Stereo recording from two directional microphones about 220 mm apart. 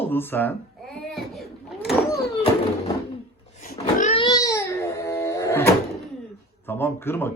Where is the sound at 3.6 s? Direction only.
35° left (ahead or behind).